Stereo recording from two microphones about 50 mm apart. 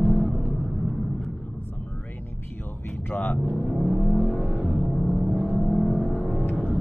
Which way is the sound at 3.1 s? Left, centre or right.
Left.